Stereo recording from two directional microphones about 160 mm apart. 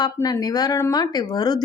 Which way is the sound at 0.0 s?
25° left (ahead or behind).